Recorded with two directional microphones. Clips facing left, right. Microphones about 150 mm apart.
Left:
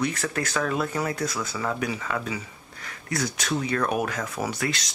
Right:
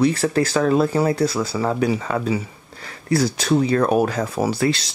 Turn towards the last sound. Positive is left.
turn(degrees=-30)  # may be behind; listen again after turning